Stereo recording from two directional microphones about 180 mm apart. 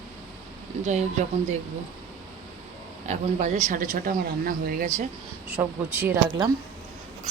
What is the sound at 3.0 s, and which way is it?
Speech, 45° right (ahead or behind).